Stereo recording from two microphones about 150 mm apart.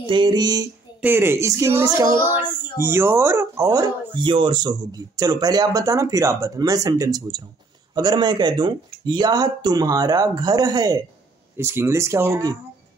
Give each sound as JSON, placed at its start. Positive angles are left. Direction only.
{"t": 0.0, "sound": "speech", "side_deg": -30}
{"t": 1.0, "sound": "speech", "side_deg": -15}
{"t": 4.2, "sound": "speech", "side_deg": -35}